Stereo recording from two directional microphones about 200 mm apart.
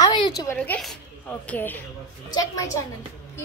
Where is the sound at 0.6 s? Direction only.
5° left (ahead or behind).